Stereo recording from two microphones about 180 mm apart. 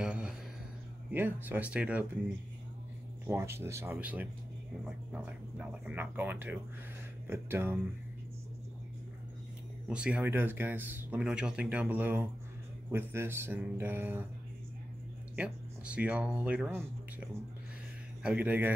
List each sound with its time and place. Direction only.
0.0 s a sound: 5° right (ahead or behind)
1.1 s speech: 10° right (ahead or behind)
9.8 s speech: 5° right (ahead or behind)
15.3 s speech: 5° right (ahead or behind)